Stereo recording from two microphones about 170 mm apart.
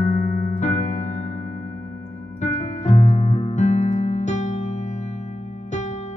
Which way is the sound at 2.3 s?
45° left (ahead or behind).